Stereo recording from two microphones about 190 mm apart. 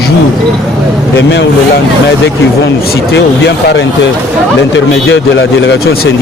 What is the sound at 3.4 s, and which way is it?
Speech, 65° left (ahead or behind).